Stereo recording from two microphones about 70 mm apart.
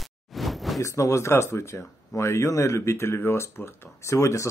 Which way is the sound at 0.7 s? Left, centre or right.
Left.